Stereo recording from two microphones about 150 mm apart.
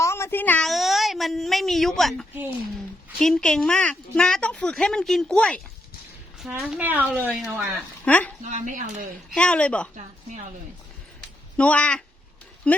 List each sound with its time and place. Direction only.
0.0 s a sound: 20° left (ahead or behind)
0.7 s a woman's voice: centre (ahead or behind)
7.6 s speech: 10° left (ahead or behind)
8.4 s speech: 55° right (ahead or behind)
9.3 s speech: 5° left (ahead or behind)
11.5 s speech: 10° left (ahead or behind)